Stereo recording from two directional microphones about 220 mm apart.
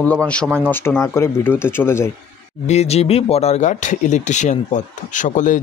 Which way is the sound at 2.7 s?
30° left (ahead or behind).